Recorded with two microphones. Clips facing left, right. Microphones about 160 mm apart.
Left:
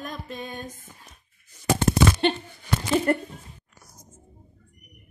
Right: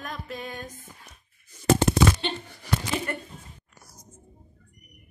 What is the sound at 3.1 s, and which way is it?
Speech, 45° left (ahead or behind).